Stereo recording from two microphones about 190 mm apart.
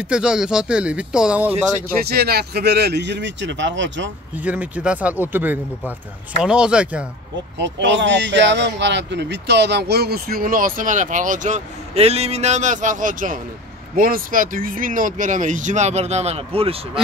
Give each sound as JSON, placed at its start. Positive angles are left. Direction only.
{"t": 0.0, "sound": "speech", "side_deg": -5}
{"t": 2.0, "sound": "speech", "side_deg": -55}
{"t": 4.4, "sound": "speech", "side_deg": -10}
{"t": 7.5, "sound": "speech", "side_deg": -70}